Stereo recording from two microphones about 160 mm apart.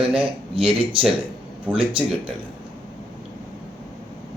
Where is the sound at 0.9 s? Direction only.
35° right (ahead or behind).